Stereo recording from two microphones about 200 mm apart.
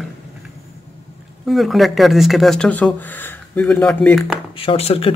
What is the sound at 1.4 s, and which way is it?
Speech, centre (ahead or behind).